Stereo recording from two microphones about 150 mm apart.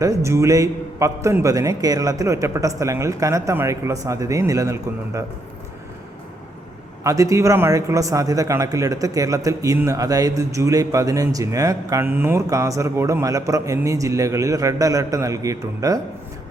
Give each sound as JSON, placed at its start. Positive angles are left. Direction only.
{"t": 0.0, "sound": "speech", "side_deg": -20}
{"t": 7.0, "sound": "speech", "side_deg": -20}